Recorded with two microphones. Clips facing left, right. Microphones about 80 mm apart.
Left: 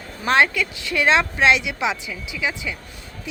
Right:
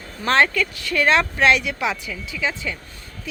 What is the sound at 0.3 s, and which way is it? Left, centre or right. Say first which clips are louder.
A woman's voice: even; centre.